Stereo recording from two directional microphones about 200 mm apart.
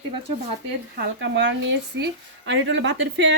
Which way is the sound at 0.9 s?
65° right (ahead or behind).